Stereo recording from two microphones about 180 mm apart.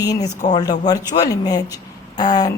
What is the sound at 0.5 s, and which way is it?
A woman's voice, 20° left (ahead or behind).